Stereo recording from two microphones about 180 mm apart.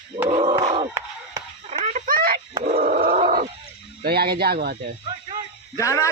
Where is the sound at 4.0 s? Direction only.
60° right (ahead or behind).